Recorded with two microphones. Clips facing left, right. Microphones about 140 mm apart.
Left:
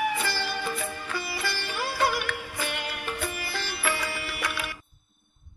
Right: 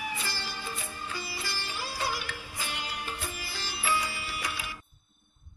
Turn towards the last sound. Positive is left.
turn(degrees=65)  # may be behind; listen again after turning